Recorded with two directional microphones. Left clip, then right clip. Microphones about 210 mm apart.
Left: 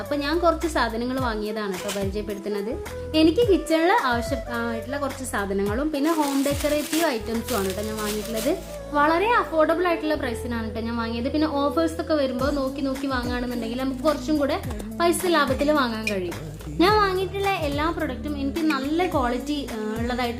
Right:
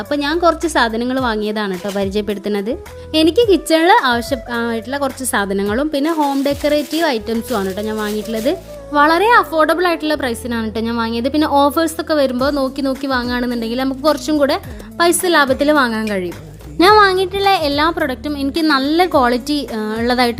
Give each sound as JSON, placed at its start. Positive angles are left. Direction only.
{"t": 0.1, "sound": "a woman's voice", "side_deg": -40}